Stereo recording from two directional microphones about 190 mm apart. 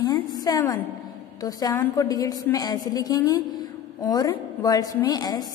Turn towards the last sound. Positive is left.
turn(degrees=20)  # may be behind; listen again after turning